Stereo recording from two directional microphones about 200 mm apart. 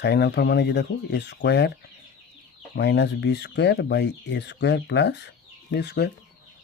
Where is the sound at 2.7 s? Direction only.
60° left (ahead or behind).